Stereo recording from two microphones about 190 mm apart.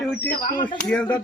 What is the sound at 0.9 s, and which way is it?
Speech, 5° left (ahead or behind).